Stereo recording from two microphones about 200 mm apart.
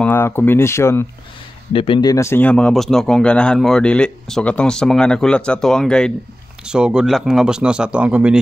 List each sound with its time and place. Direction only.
0.0 s speech: 10° left (ahead or behind)
1.7 s speech: 25° left (ahead or behind); by 8.4 s 5° right (ahead or behind)